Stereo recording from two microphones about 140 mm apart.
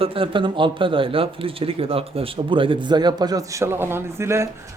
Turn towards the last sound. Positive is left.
turn(degrees=-20)  # may be behind; listen again after turning